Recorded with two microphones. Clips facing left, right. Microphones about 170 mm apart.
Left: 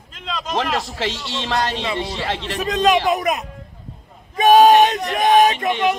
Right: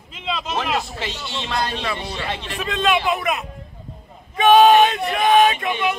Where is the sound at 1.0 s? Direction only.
80° left.